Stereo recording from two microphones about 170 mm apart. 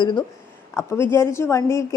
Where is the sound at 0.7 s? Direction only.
15° left (ahead or behind).